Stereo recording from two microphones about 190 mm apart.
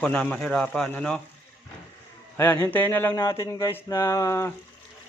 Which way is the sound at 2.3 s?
10° left (ahead or behind).